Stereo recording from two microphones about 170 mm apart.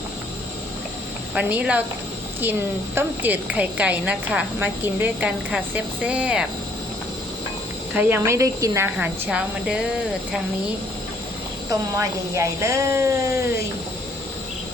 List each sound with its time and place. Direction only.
1.3 s a woman's voice: 10° right (ahead or behind)
7.9 s a woman's voice: 10° right (ahead or behind)
11.7 s a woman's voice: 20° right (ahead or behind)